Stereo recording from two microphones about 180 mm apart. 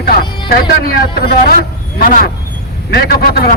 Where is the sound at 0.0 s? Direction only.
60° left (ahead or behind).